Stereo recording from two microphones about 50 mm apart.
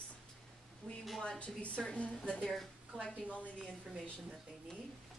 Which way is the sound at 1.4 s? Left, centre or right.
Left.